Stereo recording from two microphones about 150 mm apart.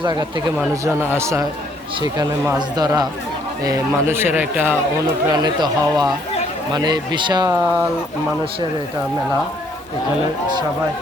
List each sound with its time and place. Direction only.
0.0 s speech: 30° right (ahead or behind)
0.9 s speech: 15° right (ahead or behind)
2.6 s speech: 25° right (ahead or behind)
5.3 s speech: 30° right (ahead or behind)
7.5 s speech: 10° right (ahead or behind)